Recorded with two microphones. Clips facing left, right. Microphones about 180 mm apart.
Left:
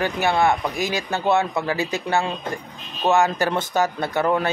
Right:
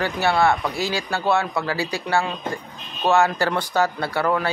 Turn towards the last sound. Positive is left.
turn(degrees=20)  # may be behind; listen again after turning